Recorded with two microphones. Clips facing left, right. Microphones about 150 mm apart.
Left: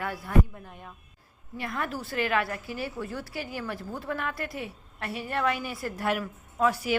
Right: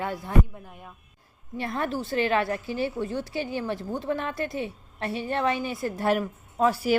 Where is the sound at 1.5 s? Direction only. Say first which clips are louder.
Right 4 dB; 30° right (ahead or behind).